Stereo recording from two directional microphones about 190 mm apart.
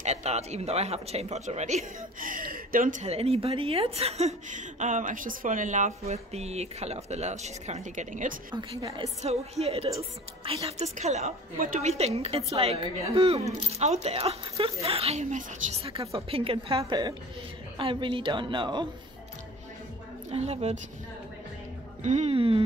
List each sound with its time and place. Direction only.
0.0 s speech: 35° right (ahead or behind)
8.5 s a woman's voice: 25° right (ahead or behind)
20.2 s speech: 35° right (ahead or behind)
22.0 s speech: 35° right (ahead or behind)